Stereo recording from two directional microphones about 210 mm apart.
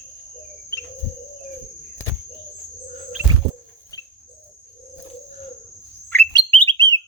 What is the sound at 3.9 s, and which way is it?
Cricket, 15° left (ahead or behind).